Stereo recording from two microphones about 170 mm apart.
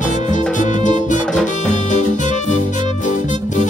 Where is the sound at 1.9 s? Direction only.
45° left (ahead or behind).